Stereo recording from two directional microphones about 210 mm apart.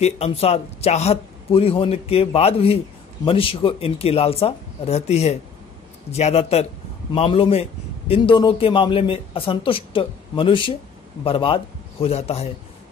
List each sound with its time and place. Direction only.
0.0 s a man's voice: 30° left (ahead or behind)